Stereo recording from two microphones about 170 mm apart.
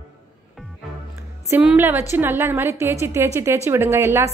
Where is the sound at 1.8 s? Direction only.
15° right (ahead or behind).